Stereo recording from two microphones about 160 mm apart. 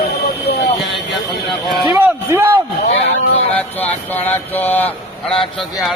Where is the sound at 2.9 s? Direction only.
40° left (ahead or behind).